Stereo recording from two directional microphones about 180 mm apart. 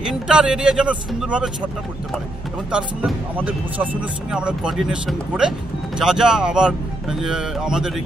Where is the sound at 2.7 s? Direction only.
5° right (ahead or behind).